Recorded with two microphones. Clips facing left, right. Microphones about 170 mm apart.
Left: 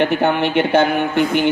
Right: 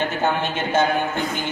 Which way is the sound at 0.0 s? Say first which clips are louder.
Left 6 dB; 65° left (ahead or behind).